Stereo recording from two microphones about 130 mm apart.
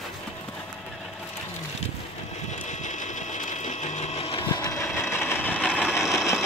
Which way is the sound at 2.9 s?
70° left (ahead or behind).